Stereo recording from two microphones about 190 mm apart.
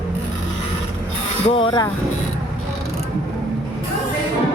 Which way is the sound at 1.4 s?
30° left (ahead or behind).